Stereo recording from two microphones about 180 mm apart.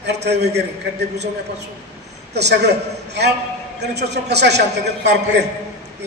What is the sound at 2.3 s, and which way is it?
Speech, 65° right (ahead or behind).